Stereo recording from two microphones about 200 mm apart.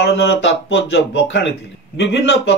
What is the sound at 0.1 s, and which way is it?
Speech, 60° left (ahead or behind).